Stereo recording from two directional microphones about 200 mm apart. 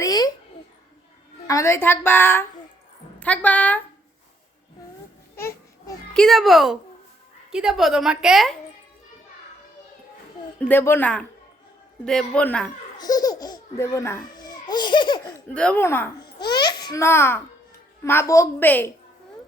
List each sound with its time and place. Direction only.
0.0 s a sound: 20° left (ahead or behind)
1.5 s a woman's voice: 15° left (ahead or behind)
5.4 s children playing: 10° left (ahead or behind)
6.2 s a woman's voice: centre (ahead or behind)
10.6 s a woman's voice: 10° left (ahead or behind)
13.0 s speech: 20° left (ahead or behind)
15.3 s a child's voice: 5° left (ahead or behind)